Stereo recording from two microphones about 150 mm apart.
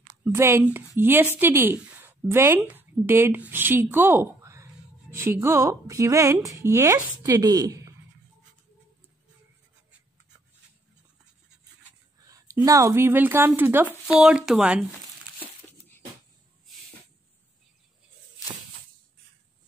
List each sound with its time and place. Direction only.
0.2 s a woman's voice: 15° right (ahead or behind)
12.4 s speech: 20° right (ahead or behind)